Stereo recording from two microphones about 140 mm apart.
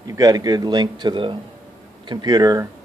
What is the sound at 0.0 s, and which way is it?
A man's voice, 25° right (ahead or behind).